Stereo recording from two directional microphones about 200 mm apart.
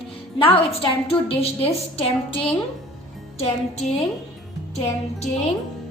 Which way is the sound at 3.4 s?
30° left (ahead or behind).